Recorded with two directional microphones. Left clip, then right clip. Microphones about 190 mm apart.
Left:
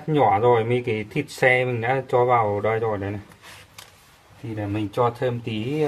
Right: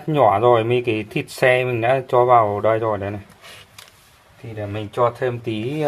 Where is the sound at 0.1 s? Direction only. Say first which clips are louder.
Right 3 dB; 25° right (ahead or behind).